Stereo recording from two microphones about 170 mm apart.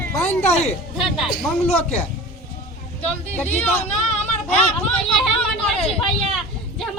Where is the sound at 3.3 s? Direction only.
10° left (ahead or behind).